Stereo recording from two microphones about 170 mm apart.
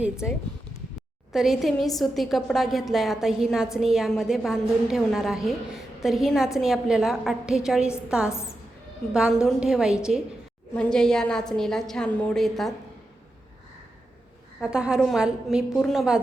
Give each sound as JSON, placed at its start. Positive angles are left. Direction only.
{"t": 1.3, "sound": "a woman's voice", "side_deg": 0}
{"t": 8.3, "sound": "a woman's voice", "side_deg": 15}
{"t": 9.1, "sound": "a woman's voice", "side_deg": -5}
{"t": 14.6, "sound": "a woman's voice", "side_deg": -5}